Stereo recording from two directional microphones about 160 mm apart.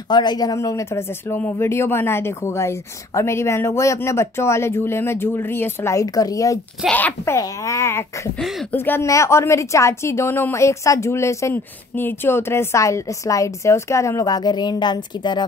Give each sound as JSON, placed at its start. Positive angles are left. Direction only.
{"t": 0.1, "sound": "a woman's voice", "side_deg": 25}
{"t": 6.9, "sound": "a woman's voice", "side_deg": 10}